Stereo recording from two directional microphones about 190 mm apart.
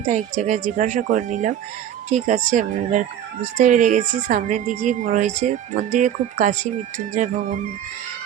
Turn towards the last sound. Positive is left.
turn(degrees=-45)  # may be behind; listen again after turning